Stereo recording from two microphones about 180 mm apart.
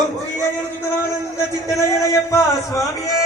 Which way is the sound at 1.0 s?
15° left (ahead or behind).